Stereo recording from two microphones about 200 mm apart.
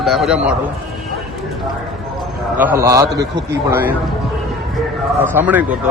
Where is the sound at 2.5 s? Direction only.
10° right (ahead or behind).